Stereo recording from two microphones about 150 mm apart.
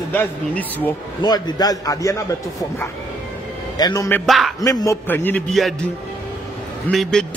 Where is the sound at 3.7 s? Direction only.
25° left (ahead or behind).